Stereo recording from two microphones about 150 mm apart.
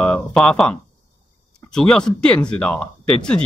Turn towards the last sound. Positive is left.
turn(degrees=5)  # may be behind; listen again after turning